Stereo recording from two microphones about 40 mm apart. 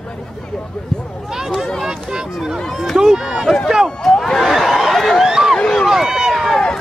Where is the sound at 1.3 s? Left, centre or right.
Centre.